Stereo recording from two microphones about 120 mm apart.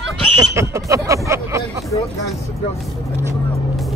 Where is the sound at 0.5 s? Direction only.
25° right (ahead or behind).